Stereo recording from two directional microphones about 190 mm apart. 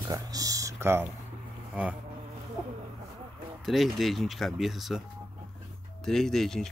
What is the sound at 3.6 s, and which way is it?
Speech, centre (ahead or behind).